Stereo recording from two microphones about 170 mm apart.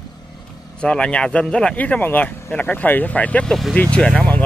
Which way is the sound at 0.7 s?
5° left (ahead or behind).